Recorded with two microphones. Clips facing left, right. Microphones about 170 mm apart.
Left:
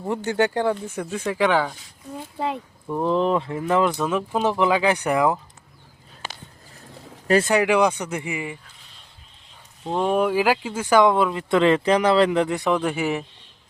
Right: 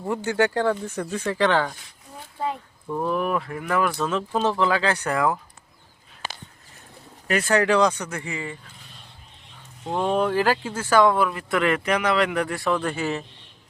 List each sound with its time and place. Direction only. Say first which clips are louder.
0.1 s speech: left 1 dB; 20° left (ahead or behind)
2.9 s speech: left 4 dB; 20° left (ahead or behind)
7.4 s speech: left 1 dB; 10° left (ahead or behind)
9.8 s speech: left 2 dB; 10° left (ahead or behind)